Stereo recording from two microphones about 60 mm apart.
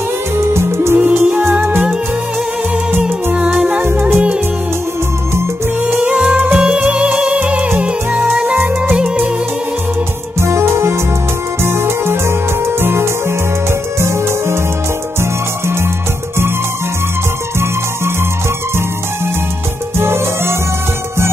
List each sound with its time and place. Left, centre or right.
0.5 s music: right
0.9 s music: right
3.3 s music: right
5.9 s music: centre
10.4 s music: right
20.0 s music: right